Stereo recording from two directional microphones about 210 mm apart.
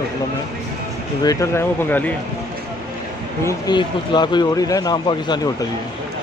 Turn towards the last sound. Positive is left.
turn(degrees=20)  # may be behind; listen again after turning